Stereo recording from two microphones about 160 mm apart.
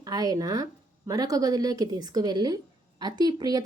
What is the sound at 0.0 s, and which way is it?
A woman's voice, 25° right (ahead or behind).